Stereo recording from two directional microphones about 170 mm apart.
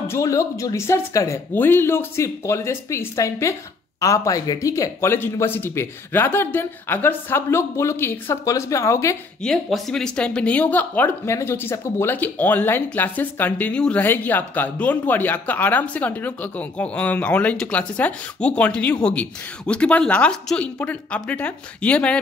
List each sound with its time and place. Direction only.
0.1 s speech: 20° left (ahead or behind)
9.4 s speech: centre (ahead or behind)